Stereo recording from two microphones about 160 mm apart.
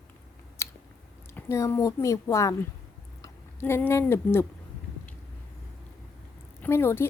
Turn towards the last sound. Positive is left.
turn(degrees=15)  # may be behind; listen again after turning